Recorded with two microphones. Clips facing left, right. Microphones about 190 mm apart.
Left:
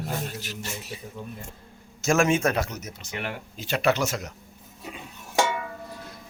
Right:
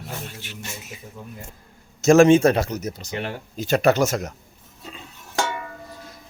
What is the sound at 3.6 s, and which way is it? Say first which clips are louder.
Speech: right 6 dB; 45° right (ahead or behind).